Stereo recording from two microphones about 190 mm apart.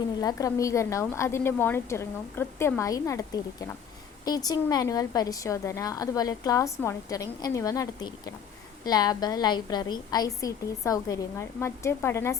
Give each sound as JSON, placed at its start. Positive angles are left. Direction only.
{"t": 0.2, "sound": "a woman's voice", "side_deg": 20}